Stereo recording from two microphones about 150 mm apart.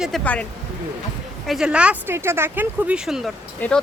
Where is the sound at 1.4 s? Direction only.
5° right (ahead or behind).